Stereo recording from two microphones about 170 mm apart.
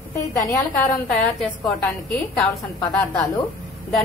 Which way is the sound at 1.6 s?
Centre (ahead or behind).